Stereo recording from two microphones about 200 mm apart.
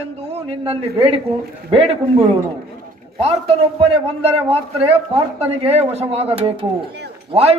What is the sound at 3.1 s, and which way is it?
A man's voice, 30° right (ahead or behind).